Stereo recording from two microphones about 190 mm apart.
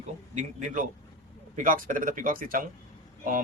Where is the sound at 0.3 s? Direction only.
40° right (ahead or behind).